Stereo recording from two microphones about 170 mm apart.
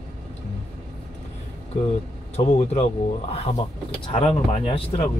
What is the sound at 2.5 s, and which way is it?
Speech, 40° left (ahead or behind).